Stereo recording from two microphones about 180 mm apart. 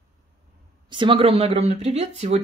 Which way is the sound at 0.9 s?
30° right (ahead or behind).